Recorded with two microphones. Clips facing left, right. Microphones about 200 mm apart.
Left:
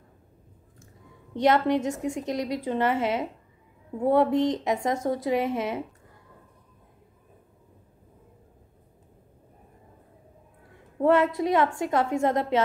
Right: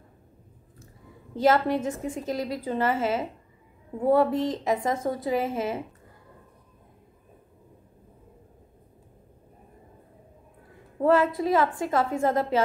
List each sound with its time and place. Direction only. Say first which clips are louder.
1.3 s a woman's voice: even; 5° right (ahead or behind)
11.1 s a woman's voice: even; centre (ahead or behind)